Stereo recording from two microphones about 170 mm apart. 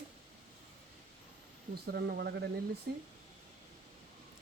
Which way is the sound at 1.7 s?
70° right (ahead or behind).